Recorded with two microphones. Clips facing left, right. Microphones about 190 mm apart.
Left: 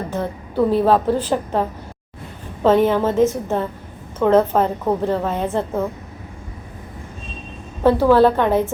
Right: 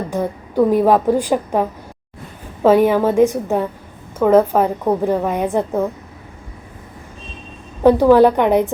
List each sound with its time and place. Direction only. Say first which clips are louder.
0.1 s a woman's voice: right 3 dB; 15° right (ahead or behind)
2.6 s a woman's voice: right 3 dB; 10° right (ahead or behind)
7.9 s a woman's voice: right 3 dB; 15° right (ahead or behind)